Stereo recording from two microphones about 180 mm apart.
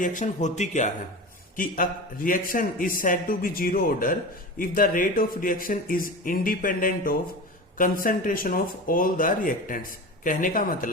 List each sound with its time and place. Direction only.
0.0 s a man's voice: 45° left (ahead or behind)